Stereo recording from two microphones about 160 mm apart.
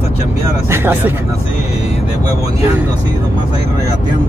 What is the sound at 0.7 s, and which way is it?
Speech, 15° right (ahead or behind).